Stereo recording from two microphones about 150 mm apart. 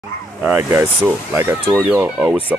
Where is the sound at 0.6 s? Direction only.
15° right (ahead or behind).